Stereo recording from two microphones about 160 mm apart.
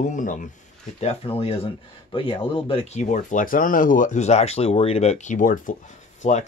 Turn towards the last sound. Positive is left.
turn(degrees=45)  # may be behind; listen again after turning